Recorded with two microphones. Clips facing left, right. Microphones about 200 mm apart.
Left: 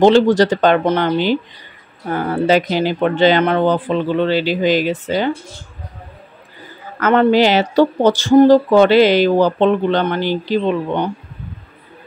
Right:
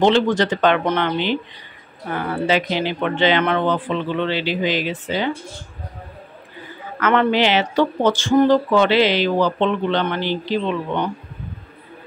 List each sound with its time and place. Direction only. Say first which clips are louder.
0.0 s speech: left 6 dB; 40° left (ahead or behind)
7.0 s speech: left 5 dB; 40° left (ahead or behind)